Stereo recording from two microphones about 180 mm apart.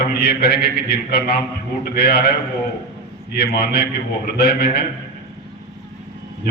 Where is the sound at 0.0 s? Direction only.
60° left (ahead or behind).